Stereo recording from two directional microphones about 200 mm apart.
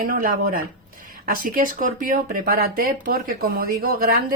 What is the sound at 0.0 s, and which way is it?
Speech, 45° right (ahead or behind).